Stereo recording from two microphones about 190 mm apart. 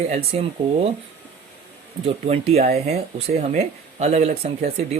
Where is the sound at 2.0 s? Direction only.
35° right (ahead or behind).